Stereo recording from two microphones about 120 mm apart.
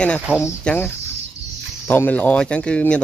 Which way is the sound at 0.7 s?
15° left (ahead or behind).